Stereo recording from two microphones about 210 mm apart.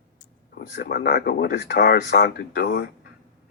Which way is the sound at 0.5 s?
50° left (ahead or behind).